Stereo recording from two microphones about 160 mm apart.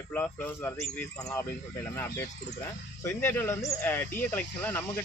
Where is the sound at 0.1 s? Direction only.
10° left (ahead or behind).